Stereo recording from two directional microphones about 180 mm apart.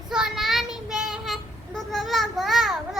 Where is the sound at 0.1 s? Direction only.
Centre (ahead or behind).